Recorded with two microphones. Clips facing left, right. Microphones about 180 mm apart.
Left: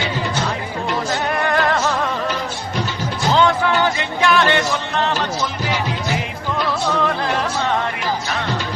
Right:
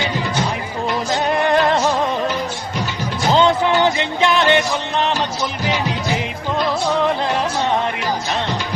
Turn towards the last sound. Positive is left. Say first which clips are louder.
# right 1 dB
turn(degrees=-20)  # may be behind; listen again after turning